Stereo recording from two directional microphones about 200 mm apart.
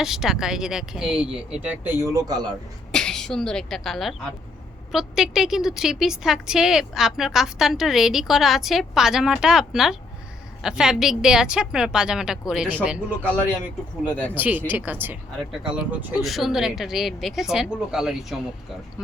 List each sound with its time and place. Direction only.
0.0 s a man's voice: centre (ahead or behind); by 2.6 s 20° right (ahead or behind)
2.9 s speech: 5° left (ahead or behind)
14.3 s speech: 10° right (ahead or behind)